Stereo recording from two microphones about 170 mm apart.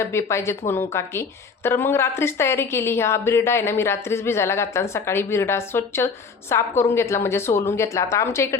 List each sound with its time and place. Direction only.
0.0 s a woman's voice: 15° left (ahead or behind)